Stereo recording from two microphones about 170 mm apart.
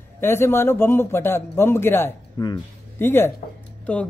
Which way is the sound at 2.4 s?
25° left (ahead or behind).